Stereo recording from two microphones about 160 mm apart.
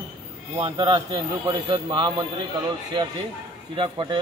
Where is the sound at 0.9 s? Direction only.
25° right (ahead or behind).